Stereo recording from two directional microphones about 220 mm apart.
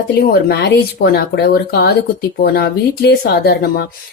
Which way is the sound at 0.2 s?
45° left (ahead or behind).